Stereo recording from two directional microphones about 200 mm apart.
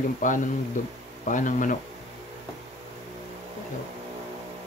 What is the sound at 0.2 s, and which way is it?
Speech, 40° left (ahead or behind).